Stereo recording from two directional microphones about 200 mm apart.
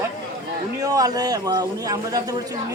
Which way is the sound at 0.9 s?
20° right (ahead or behind).